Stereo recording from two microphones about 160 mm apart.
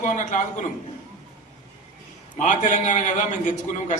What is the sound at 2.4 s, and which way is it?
A man's voice, 50° left (ahead or behind).